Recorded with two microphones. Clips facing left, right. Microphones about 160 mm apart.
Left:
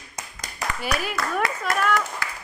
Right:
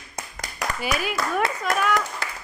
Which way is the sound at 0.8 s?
Centre (ahead or behind).